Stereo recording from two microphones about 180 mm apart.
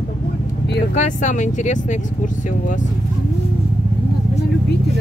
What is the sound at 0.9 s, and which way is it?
Speech, 45° left (ahead or behind).